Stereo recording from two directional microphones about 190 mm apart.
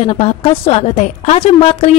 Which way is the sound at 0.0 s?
30° left (ahead or behind).